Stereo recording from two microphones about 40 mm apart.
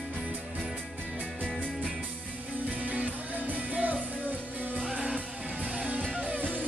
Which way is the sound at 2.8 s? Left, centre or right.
Right.